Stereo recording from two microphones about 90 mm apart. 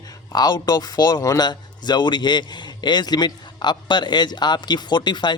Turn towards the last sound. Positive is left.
turn(degrees=55)  # may be behind; listen again after turning